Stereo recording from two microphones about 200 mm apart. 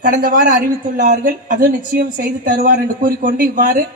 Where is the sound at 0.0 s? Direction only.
40° right (ahead or behind).